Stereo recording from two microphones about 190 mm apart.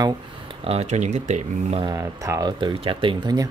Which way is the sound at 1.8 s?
20° right (ahead or behind).